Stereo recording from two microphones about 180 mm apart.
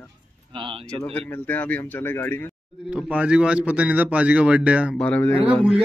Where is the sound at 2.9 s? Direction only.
5° right (ahead or behind).